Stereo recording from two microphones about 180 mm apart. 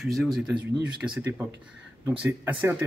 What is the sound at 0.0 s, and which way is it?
Speech, centre (ahead or behind).